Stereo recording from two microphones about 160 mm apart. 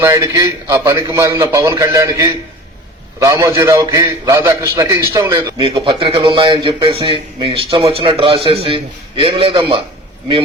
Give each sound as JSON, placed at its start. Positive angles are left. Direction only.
{"t": 0.0, "sound": "a man's voice", "side_deg": -20}